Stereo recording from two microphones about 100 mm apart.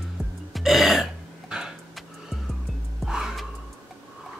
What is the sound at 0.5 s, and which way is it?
Burping, centre (ahead or behind).